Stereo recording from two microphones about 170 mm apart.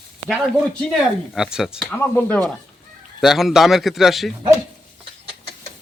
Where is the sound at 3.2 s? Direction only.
Centre (ahead or behind).